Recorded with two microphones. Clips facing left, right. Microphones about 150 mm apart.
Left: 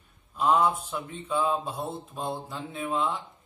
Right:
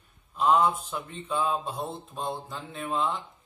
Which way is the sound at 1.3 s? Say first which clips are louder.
Left 1 dB; centre (ahead or behind).